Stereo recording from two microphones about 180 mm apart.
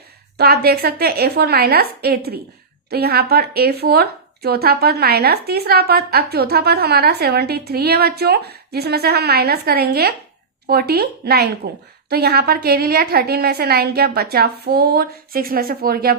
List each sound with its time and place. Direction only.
0.3 s speech: 60° right (ahead or behind)